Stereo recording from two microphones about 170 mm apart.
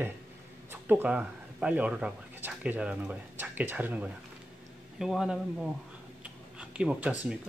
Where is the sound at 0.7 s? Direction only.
10° right (ahead or behind).